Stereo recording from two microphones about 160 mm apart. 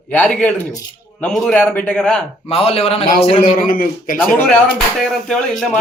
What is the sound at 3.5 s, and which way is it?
Speech, 60° left (ahead or behind).